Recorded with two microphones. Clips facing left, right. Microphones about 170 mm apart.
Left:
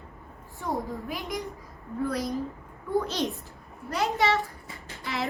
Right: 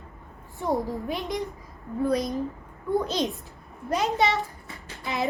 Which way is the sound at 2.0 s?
20° right (ahead or behind).